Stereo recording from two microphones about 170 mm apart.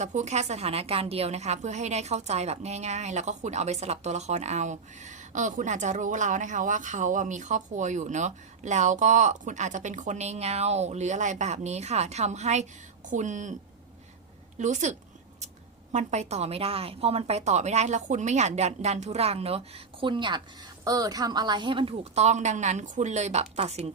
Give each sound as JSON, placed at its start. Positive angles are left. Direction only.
{"t": 0.0, "sound": "a woman's voice", "side_deg": -45}
{"t": 14.6, "sound": "a woman's voice", "side_deg": -45}